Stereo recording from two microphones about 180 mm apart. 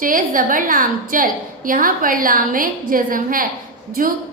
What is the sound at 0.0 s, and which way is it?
A woman's voice, 50° right (ahead or behind).